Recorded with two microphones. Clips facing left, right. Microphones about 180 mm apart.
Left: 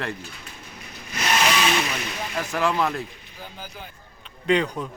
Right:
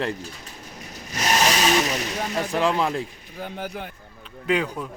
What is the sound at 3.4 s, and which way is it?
Speech, 65° right (ahead or behind).